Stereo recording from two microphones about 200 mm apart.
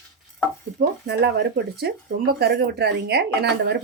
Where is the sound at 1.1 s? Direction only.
55° right (ahead or behind).